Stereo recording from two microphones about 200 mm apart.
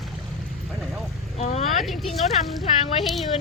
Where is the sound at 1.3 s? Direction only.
35° left (ahead or behind).